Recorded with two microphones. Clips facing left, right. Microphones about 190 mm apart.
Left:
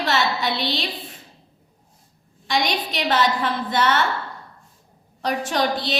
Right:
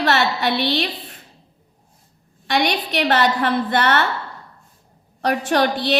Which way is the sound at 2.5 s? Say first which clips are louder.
Right 3 dB; 60° right (ahead or behind).